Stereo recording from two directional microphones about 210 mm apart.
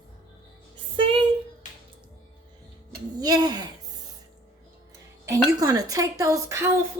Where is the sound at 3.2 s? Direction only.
20° right (ahead or behind).